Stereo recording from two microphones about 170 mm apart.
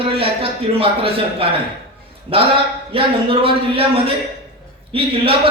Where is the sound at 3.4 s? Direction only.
35° right (ahead or behind).